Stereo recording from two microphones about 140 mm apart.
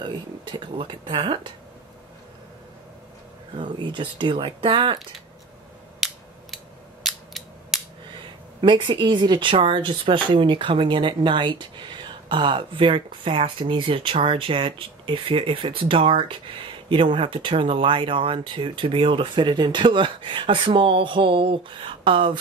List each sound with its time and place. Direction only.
0.0 s speech: 35° right (ahead or behind)
3.5 s speech: 35° right (ahead or behind)
5.9 s scissors: centre (ahead or behind)
8.5 s speech: 35° right (ahead or behind)